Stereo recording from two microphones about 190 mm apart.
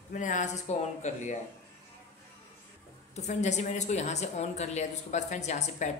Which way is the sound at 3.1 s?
40° left (ahead or behind).